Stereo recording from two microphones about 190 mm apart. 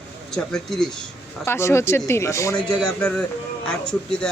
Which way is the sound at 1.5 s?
15° left (ahead or behind).